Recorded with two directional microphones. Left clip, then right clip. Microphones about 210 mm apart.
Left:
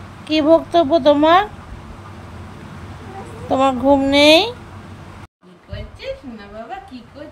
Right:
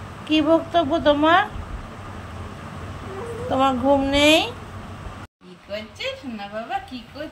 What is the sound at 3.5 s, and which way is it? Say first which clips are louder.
Speech: left 4 dB; 15° left (ahead or behind).